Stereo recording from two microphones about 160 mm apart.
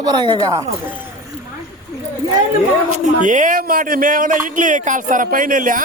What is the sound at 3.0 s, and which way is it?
Speech, 50° right (ahead or behind).